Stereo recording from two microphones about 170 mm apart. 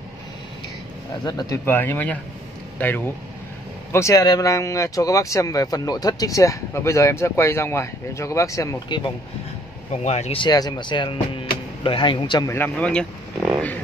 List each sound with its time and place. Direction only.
1.2 s speech: 15° left (ahead or behind)
10.0 s speech: 40° left (ahead or behind)
10.4 s speech: 25° left (ahead or behind)
12.5 s speech: 10° left (ahead or behind)